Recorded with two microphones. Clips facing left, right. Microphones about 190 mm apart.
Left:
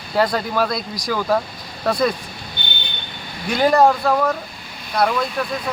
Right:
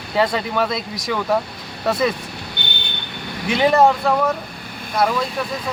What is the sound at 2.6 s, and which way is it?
Vehicle, 70° right (ahead or behind).